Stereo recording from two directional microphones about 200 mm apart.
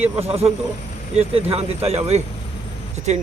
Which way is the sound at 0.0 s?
30° right (ahead or behind).